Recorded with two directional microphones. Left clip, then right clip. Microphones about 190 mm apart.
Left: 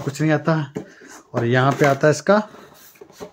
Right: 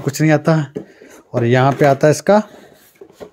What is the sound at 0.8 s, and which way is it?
Speech, 15° right (ahead or behind).